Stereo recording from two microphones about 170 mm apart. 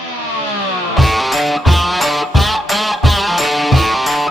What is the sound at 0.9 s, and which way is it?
Music, centre (ahead or behind).